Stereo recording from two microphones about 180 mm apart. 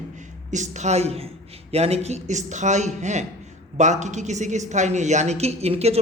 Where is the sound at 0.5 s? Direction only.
40° right (ahead or behind).